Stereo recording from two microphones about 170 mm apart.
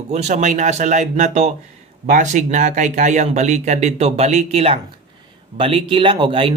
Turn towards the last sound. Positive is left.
turn(degrees=-30)  # may be behind; listen again after turning